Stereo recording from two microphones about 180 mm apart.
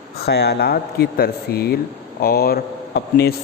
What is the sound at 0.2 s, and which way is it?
Speech, 65° left (ahead or behind).